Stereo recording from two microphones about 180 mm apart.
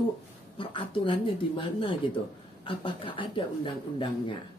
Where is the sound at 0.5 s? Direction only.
30° left (ahead or behind).